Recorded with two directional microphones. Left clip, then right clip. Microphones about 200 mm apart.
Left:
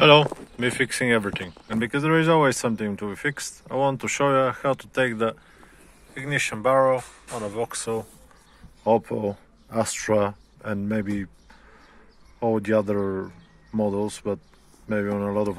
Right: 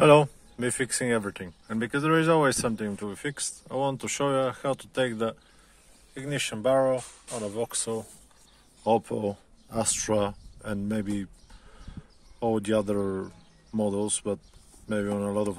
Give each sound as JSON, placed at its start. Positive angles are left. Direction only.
{"t": 0.0, "sound": "speech", "side_deg": -20}
{"t": 6.1, "sound": "speech", "side_deg": -30}
{"t": 12.4, "sound": "speech", "side_deg": -20}